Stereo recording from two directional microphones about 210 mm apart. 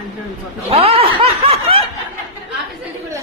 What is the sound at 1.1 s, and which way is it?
Snicker, 25° right (ahead or behind).